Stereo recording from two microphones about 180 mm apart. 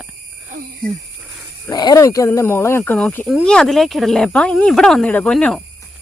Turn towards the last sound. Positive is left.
turn(degrees=5)  # may be behind; listen again after turning